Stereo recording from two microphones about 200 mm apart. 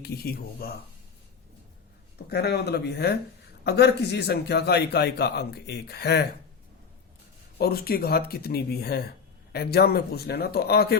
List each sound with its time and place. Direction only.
0.0 s speech: 50° left (ahead or behind)
2.1 s a man's voice: 55° left (ahead or behind)
7.6 s speech: 50° left (ahead or behind)